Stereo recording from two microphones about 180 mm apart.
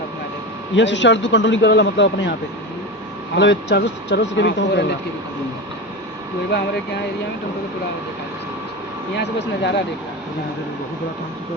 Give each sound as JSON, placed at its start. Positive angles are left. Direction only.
{"t": 0.8, "sound": "a man's voice", "side_deg": 90}
{"t": 3.3, "sound": "speech", "side_deg": 75}
{"t": 9.1, "sound": "speech", "side_deg": 75}